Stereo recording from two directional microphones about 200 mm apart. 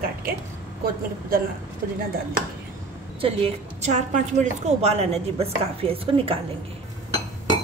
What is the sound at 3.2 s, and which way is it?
A woman's voice, 30° right (ahead or behind).